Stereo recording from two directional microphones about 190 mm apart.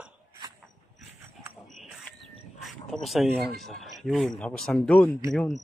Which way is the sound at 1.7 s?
Centre (ahead or behind).